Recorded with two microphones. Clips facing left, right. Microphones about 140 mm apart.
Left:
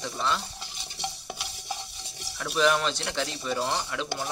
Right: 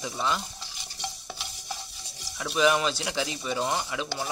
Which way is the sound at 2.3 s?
5° right (ahead or behind).